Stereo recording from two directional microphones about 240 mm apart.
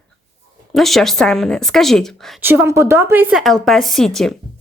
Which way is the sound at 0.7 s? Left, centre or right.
Centre.